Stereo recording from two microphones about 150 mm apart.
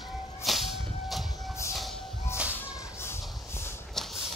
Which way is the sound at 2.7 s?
15° left (ahead or behind).